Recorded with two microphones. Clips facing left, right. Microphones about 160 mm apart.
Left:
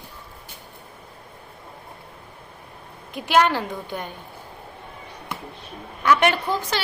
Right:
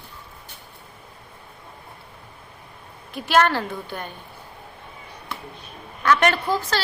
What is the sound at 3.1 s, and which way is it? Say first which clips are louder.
Speech: even; 15° left (ahead or behind).